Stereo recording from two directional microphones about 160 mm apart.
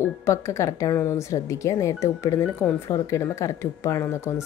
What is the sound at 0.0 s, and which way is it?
A woman's voice, 15° left (ahead or behind).